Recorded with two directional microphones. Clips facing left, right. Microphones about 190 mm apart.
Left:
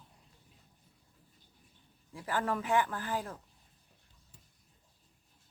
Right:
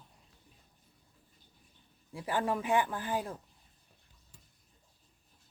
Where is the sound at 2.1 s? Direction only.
15° right (ahead or behind).